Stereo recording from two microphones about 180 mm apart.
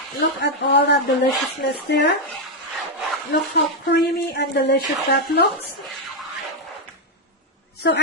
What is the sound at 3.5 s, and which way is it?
Speech, 60° left (ahead or behind).